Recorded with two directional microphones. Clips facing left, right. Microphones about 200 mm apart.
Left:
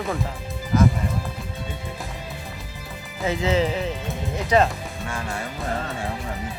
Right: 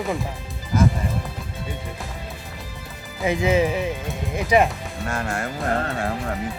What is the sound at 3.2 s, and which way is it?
Speech, 15° right (ahead or behind).